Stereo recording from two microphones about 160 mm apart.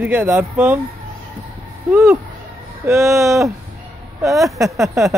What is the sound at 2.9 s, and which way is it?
Speech, 20° right (ahead or behind).